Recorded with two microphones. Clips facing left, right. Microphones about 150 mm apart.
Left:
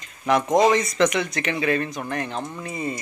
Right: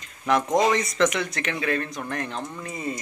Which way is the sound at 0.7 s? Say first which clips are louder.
Left 2 dB; centre (ahead or behind).